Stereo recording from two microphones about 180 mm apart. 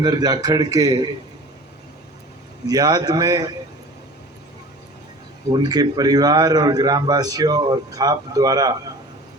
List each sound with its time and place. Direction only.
0.0 s a man's voice: 20° right (ahead or behind)
2.6 s a man's voice: 20° right (ahead or behind)
5.5 s a man's voice: 20° right (ahead or behind)